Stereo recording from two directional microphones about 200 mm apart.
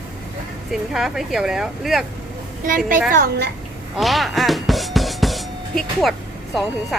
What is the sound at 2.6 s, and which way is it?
Speech, 45° right (ahead or behind).